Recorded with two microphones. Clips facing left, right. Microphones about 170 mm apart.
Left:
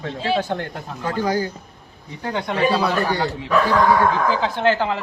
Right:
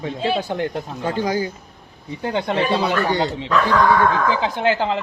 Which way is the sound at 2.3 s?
25° right (ahead or behind).